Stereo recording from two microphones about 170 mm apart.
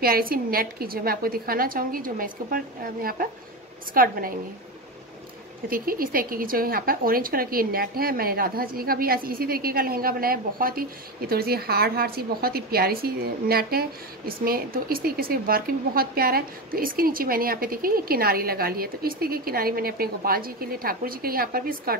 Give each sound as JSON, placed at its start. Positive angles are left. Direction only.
{"t": 0.0, "sound": "a woman's voice", "side_deg": -60}
{"t": 5.7, "sound": "a woman's voice", "side_deg": -60}